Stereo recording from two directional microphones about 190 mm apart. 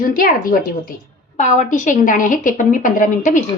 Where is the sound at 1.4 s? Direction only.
40° left (ahead or behind).